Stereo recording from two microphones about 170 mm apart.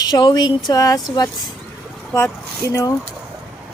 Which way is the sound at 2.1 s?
15° left (ahead or behind).